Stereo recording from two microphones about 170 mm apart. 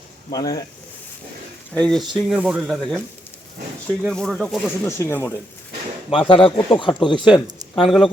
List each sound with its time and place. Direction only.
0.3 s speech: 20° left (ahead or behind)
1.7 s speech: 5° left (ahead or behind)
4.1 s speech: 5° left (ahead or behind)
4.9 s speech: 15° left (ahead or behind)
6.1 s speech: 30° left (ahead or behind)
7.9 s speech: centre (ahead or behind)